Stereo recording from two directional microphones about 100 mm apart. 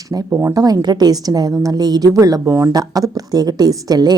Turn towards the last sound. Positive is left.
turn(degrees=-40)  # may be behind; listen again after turning